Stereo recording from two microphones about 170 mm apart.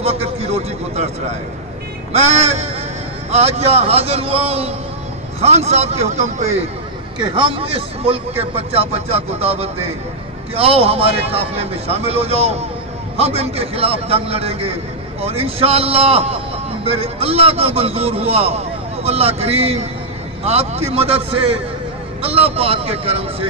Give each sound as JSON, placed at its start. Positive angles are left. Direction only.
{"t": 0.0, "sound": "a man's voice", "side_deg": -35}
{"t": 2.1, "sound": "a man's voice", "side_deg": -40}
{"t": 7.2, "sound": "a man's voice", "side_deg": -30}